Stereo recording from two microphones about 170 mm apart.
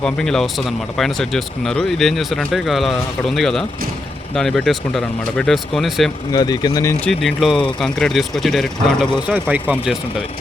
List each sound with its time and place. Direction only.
0.0 s speech: 5° left (ahead or behind)
6.3 s speech: 25° left (ahead or behind)
7.0 s speech: centre (ahead or behind)
9.3 s speech: 10° right (ahead or behind)